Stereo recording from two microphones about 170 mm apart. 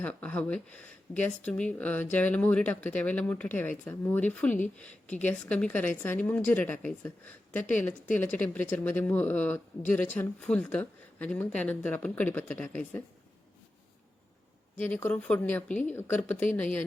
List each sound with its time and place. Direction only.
0.0 s speech: 10° left (ahead or behind)
7.6 s a woman's voice: 45° left (ahead or behind)
8.2 s speech: 10° left (ahead or behind)
14.8 s speech: 10° left (ahead or behind)